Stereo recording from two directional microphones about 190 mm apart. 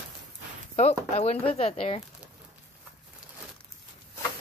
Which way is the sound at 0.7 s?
35° left (ahead or behind).